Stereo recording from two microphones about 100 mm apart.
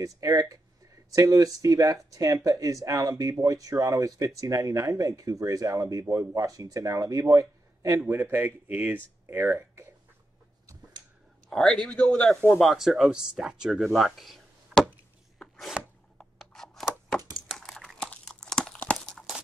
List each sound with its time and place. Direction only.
0.0 s speech: 35° right (ahead or behind)
8.1 s speech: 20° right (ahead or behind)
11.4 s a man's voice: 5° left (ahead or behind)
15.3 s chopping: 5° left (ahead or behind)
16.3 s scissors: 5° left (ahead or behind)
17.5 s crumpling: 5° left (ahead or behind)
19.0 s tearing: centre (ahead or behind)